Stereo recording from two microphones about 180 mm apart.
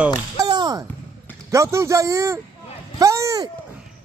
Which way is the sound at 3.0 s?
15° right (ahead or behind).